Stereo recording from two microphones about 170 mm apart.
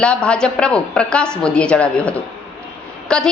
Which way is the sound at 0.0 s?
5° left (ahead or behind).